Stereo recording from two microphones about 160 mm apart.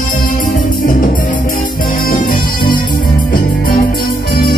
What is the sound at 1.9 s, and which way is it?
Music, 60° left (ahead or behind).